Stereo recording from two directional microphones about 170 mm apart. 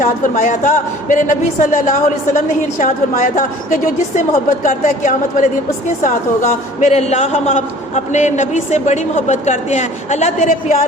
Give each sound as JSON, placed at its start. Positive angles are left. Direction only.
{"t": 0.0, "sound": "a man's voice", "side_deg": 50}